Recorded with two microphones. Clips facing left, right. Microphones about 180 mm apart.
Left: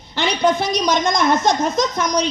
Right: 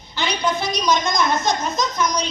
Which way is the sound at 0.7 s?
90° left.